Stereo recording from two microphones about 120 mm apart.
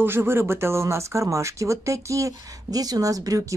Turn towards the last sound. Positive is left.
turn(degrees=-30)  # may be behind; listen again after turning